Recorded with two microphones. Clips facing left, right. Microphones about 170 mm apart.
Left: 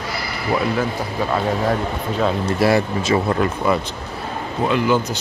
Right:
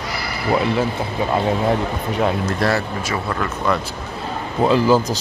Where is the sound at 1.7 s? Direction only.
15° right (ahead or behind).